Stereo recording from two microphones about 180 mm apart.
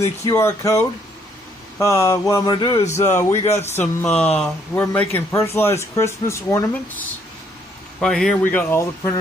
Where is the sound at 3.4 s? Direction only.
35° left (ahead or behind).